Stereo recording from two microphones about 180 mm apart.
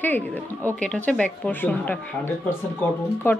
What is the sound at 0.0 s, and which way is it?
Speech, 10° left (ahead or behind).